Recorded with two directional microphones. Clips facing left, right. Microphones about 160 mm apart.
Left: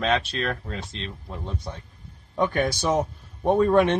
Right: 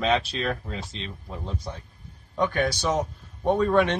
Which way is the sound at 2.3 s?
15° left (ahead or behind).